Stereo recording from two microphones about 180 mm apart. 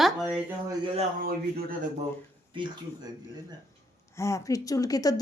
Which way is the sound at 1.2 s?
50° right (ahead or behind).